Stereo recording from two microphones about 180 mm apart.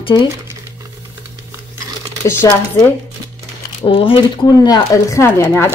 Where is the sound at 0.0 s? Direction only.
25° left (ahead or behind).